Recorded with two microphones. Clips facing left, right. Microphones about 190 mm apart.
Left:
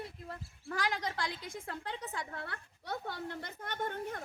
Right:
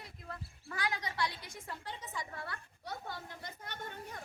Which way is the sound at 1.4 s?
60° left (ahead or behind).